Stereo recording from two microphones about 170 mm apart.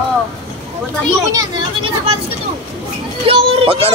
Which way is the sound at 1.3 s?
30° right (ahead or behind).